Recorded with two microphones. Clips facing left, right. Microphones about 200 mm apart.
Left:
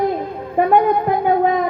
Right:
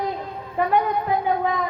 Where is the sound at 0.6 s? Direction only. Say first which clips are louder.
Left 7 dB; 55° left (ahead or behind).